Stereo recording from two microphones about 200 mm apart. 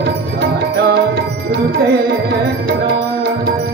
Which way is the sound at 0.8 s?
55° right (ahead or behind).